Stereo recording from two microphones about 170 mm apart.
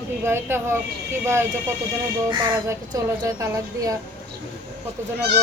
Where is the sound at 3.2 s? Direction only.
20° right (ahead or behind).